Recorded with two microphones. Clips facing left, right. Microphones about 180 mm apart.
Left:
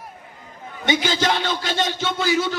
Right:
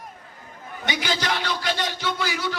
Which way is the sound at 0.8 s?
25° left (ahead or behind).